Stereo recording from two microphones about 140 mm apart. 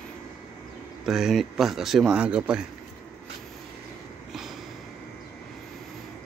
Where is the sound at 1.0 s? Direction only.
Centre (ahead or behind).